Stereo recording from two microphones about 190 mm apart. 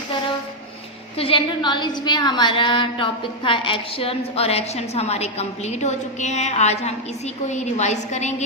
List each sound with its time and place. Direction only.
1.1 s a woman's voice: 30° left (ahead or behind)